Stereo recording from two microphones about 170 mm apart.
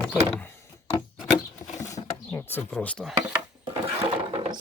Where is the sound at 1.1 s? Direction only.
Centre (ahead or behind).